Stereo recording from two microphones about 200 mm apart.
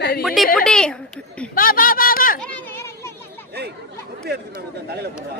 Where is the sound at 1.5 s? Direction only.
45° left (ahead or behind).